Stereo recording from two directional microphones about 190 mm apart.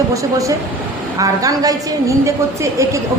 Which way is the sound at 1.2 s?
20° right (ahead or behind).